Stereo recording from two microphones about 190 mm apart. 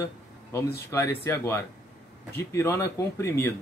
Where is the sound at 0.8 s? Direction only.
15° left (ahead or behind).